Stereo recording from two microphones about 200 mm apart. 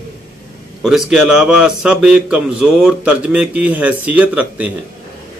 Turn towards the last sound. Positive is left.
turn(degrees=-5)  # may be behind; listen again after turning